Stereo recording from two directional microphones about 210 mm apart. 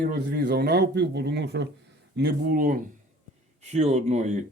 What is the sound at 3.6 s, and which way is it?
Speech, 30° right (ahead or behind).